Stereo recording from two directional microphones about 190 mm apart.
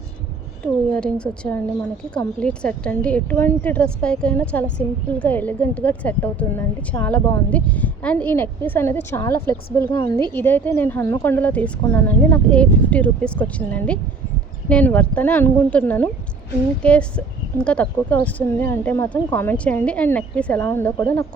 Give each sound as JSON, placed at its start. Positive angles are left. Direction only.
{"t": 0.6, "sound": "a woman's voice", "side_deg": 5}